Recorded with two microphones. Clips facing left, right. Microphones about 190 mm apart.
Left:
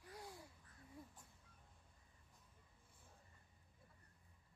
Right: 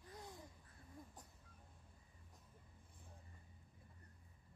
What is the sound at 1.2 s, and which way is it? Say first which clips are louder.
Speech: right 5 dB; 40° right (ahead or behind).